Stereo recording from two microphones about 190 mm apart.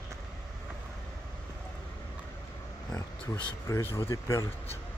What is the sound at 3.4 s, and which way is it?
Speech, 10° left (ahead or behind).